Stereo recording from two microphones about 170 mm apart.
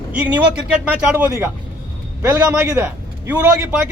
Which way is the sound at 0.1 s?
10° right (ahead or behind).